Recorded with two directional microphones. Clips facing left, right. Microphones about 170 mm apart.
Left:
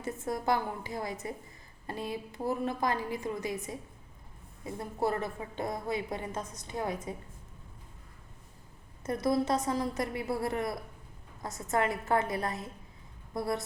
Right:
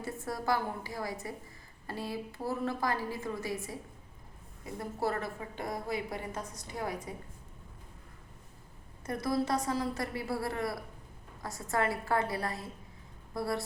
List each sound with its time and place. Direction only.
0.0 s a woman's voice: 20° left (ahead or behind)
9.0 s a woman's voice: 20° left (ahead or behind)